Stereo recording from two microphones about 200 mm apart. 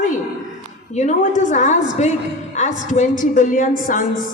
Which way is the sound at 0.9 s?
40° left (ahead or behind).